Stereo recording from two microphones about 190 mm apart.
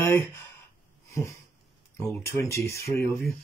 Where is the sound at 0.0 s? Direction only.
15° left (ahead or behind).